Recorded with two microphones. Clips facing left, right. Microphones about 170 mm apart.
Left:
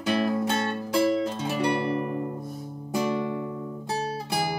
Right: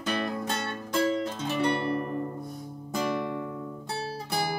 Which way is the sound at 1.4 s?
15° left (ahead or behind).